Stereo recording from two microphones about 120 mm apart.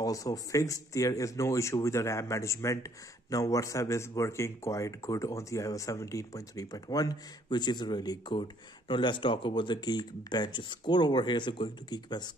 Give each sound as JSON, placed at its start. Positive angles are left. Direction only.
{"t": 0.0, "sound": "speech", "side_deg": 30}